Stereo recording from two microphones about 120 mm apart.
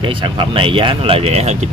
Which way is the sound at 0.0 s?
45° right (ahead or behind).